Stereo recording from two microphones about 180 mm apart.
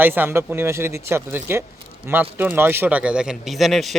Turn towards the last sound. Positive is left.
turn(degrees=0)  # may be behind; listen again after turning